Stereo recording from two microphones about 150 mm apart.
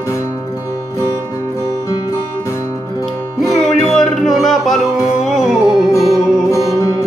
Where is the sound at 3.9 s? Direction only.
Centre (ahead or behind).